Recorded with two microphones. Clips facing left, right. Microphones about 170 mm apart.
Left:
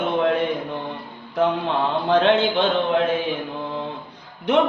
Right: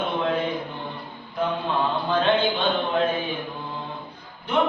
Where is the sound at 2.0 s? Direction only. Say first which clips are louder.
Left 5 dB; 75° left (ahead or behind).